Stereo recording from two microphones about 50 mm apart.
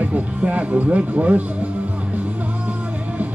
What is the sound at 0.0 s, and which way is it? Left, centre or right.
Speech, right.